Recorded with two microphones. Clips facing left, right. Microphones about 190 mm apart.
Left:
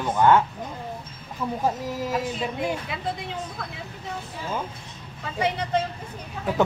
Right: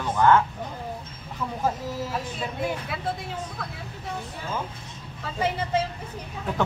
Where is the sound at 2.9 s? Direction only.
5° right (ahead or behind).